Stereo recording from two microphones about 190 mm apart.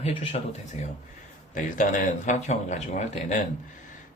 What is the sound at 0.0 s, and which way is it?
Speech, 35° left (ahead or behind).